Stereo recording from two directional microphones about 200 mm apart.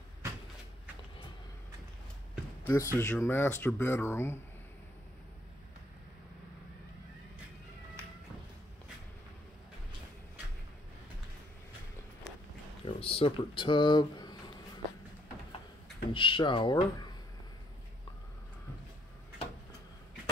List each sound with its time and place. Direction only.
2.6 s speech: 15° left (ahead or behind)
12.8 s speech: 30° left (ahead or behind)
16.1 s speech: 25° left (ahead or behind)